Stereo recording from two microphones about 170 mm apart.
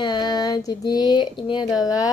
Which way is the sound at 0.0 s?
25° left (ahead or behind).